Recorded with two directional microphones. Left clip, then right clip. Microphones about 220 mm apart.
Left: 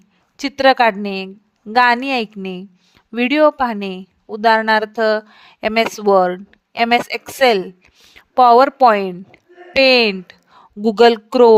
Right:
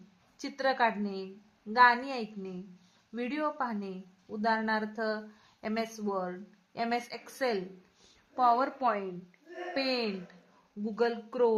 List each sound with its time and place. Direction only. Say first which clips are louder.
0.3 s a woman's voice: left 17 dB; 40° left (ahead or behind)